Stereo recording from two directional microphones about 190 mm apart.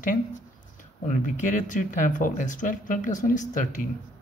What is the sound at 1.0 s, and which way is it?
Speech, 40° left (ahead or behind).